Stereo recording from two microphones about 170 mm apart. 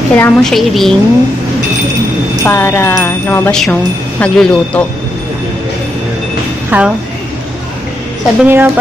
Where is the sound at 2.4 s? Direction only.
10° left (ahead or behind).